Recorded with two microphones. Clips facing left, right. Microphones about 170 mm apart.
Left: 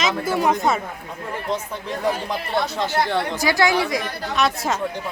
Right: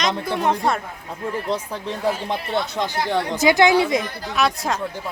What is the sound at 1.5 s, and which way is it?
Speech, 30° right (ahead or behind).